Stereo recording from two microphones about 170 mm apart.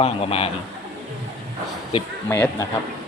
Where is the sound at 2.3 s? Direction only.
15° left (ahead or behind).